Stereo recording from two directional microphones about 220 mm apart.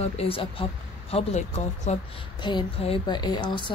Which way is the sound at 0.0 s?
25° left (ahead or behind).